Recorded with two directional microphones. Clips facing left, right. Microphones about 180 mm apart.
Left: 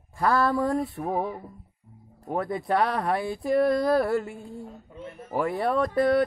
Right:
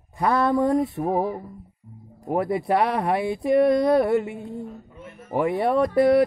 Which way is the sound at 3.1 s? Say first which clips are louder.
Right 5 dB; centre (ahead or behind).